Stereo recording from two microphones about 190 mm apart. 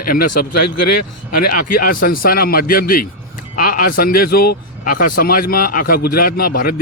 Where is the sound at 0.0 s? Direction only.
50° left (ahead or behind).